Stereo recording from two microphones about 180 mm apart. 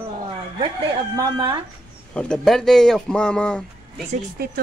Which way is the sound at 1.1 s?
25° right (ahead or behind).